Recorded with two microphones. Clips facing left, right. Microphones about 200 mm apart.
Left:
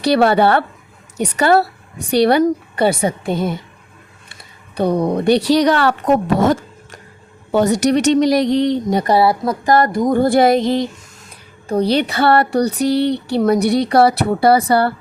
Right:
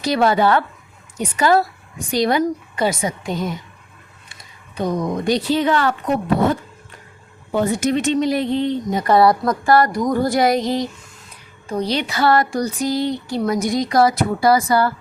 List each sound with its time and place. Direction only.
0.0 s a woman's voice: 65° left (ahead or behind)
4.9 s a woman's voice: 35° left (ahead or behind)
5.2 s speech: 70° left (ahead or behind)
6.2 s a sound: 90° left
7.5 s speech: 75° left (ahead or behind)
9.0 s a woman's voice: 5° left (ahead or behind)
9.5 s a sound: 20° left (ahead or behind)
11.9 s speech: 60° left (ahead or behind)
13.8 s a woman's voice: 30° left (ahead or behind)
14.4 s speech: 60° left (ahead or behind)